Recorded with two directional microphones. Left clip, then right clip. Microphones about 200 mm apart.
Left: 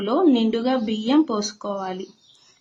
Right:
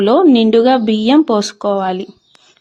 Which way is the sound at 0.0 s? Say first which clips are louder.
Right 9 dB; 40° right (ahead or behind).